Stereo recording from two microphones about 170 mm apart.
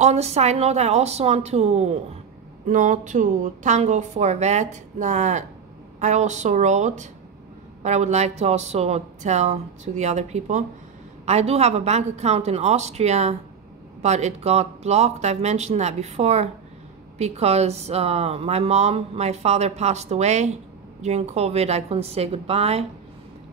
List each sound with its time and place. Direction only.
0.0 s a woman's voice: 40° right (ahead or behind)